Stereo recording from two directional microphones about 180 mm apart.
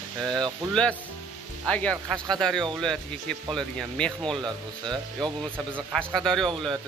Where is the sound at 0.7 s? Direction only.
5° left (ahead or behind).